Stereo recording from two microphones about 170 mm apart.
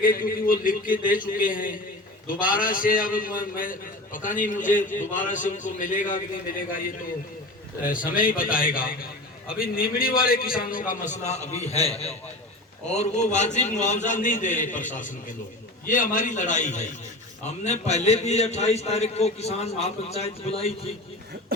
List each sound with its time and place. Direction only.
0.0 s a man's voice: 55° left (ahead or behind)
7.9 s a man's voice: 55° left (ahead or behind); by 20.9 s 35° left (ahead or behind)